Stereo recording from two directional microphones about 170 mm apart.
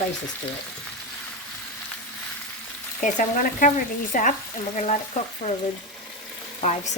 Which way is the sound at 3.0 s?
45° left (ahead or behind).